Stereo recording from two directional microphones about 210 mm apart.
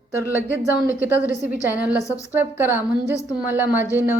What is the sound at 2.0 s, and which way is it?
Speech, 15° left (ahead or behind).